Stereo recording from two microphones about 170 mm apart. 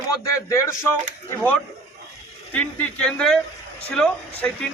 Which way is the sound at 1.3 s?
5° left (ahead or behind).